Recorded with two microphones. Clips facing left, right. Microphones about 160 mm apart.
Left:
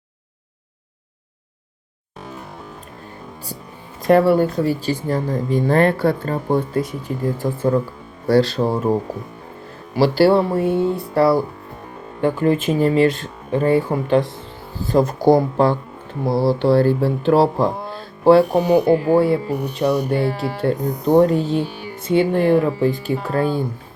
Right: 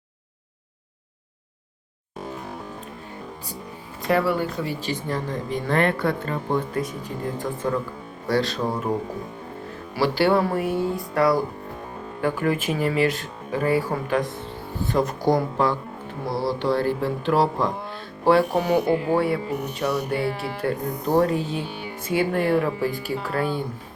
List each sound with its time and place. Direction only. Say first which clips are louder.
4.1 s speech: left 8 dB; 45° left (ahead or behind)
10.0 s speech: left 6 dB; 35° left (ahead or behind)
23.2 s speech: left 5 dB; 35° left (ahead or behind)